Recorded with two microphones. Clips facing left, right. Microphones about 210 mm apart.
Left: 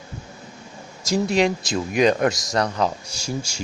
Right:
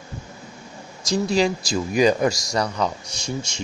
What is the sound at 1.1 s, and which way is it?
Speech, centre (ahead or behind).